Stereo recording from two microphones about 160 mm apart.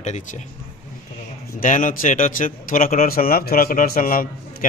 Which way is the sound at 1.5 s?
50° left (ahead or behind).